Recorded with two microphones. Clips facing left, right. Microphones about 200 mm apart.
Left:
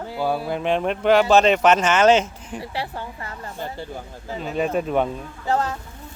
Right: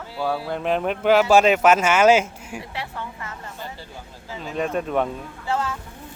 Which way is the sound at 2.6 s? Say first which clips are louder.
Left 4 dB; 30° left (ahead or behind).